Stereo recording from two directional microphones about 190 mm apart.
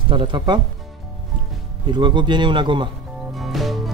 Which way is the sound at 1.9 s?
25° right (ahead or behind).